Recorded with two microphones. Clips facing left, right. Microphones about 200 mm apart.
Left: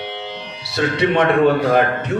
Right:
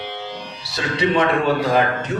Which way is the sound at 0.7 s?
60° left (ahead or behind).